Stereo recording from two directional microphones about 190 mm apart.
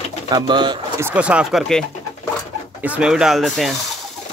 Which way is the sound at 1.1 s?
5° right (ahead or behind).